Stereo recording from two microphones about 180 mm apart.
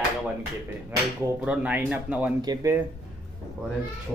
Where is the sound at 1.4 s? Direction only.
5° right (ahead or behind).